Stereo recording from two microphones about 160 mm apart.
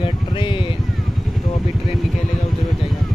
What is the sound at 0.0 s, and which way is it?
Speech, 30° left (ahead or behind).